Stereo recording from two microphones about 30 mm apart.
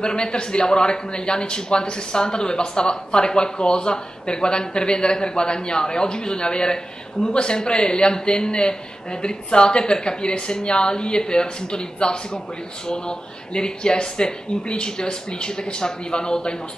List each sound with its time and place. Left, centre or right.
0.0 s a man's voice: left